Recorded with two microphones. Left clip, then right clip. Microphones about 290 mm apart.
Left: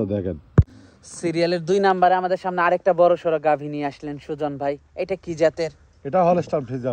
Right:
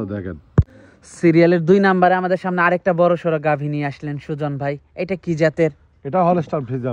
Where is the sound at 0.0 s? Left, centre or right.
Right.